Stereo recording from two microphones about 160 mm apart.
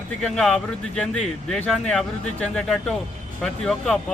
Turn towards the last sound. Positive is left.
turn(degrees=5)  # may be behind; listen again after turning